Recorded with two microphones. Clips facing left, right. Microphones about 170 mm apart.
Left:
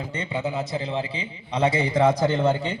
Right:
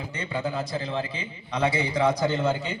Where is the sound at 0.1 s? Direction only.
25° left (ahead or behind).